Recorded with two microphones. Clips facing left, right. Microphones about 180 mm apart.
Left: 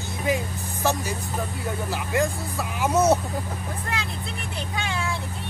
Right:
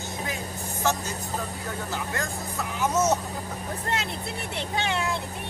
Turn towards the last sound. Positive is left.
turn(degrees=-20)  # may be behind; listen again after turning